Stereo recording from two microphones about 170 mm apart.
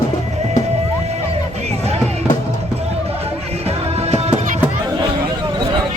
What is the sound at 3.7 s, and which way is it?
Music, 40° right (ahead or behind).